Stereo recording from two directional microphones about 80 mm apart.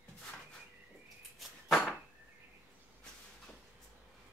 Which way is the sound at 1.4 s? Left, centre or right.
Centre.